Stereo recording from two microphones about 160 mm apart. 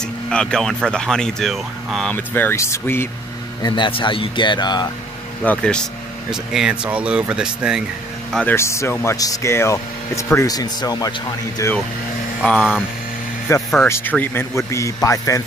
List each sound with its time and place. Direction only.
0.0 s speech: 5° left (ahead or behind)
2.1 s speech: 10° left (ahead or behind)
3.6 s speech: 30° left (ahead or behind)
5.4 s speech: 10° left (ahead or behind)
8.3 s speech: 5° left (ahead or behind)
8.5 s speech: 15° left (ahead or behind)
12.4 s speech: 5° left (ahead or behind)
13.5 s speech: 15° left (ahead or behind)